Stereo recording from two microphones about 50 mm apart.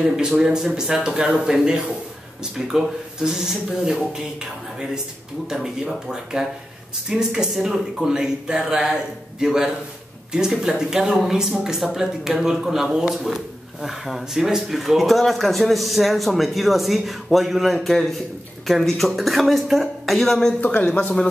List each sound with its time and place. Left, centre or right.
0.0 s speech: centre
20.6 s speech: left